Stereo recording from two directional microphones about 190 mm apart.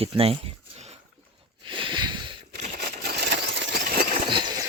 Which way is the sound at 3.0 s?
65° right (ahead or behind).